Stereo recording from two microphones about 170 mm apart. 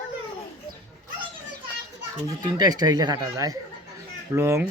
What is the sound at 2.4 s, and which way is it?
Speech, 25° right (ahead or behind).